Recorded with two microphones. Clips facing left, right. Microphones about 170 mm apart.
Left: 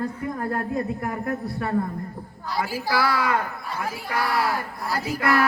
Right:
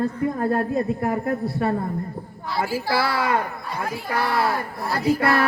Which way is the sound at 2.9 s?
25° right (ahead or behind).